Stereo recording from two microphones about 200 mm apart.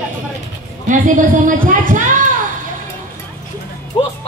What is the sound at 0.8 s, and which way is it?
A woman's voice, 40° right (ahead or behind).